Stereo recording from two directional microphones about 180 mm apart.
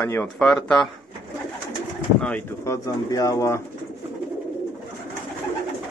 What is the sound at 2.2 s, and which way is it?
Speech, 10° left (ahead or behind).